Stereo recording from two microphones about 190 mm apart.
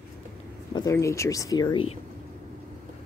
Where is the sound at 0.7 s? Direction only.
15° left (ahead or behind).